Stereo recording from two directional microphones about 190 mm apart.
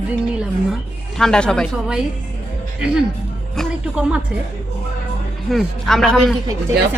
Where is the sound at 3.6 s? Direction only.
5° right (ahead or behind).